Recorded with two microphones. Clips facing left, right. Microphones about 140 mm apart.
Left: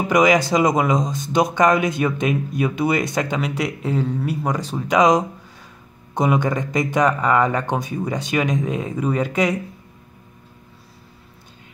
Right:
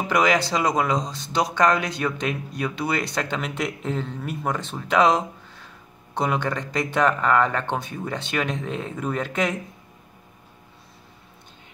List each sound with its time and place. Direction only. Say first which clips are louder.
0.1 s speech: left 5 dB; 15° left (ahead or behind)
1.0 s speech: left 8 dB; 45° left (ahead or behind)
1.3 s speech: left 4 dB; 15° left (ahead or behind)